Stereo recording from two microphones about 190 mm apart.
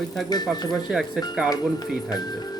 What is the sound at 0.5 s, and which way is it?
Speech, 20° left (ahead or behind).